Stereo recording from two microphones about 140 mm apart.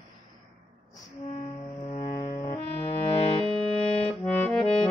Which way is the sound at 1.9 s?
50° left (ahead or behind).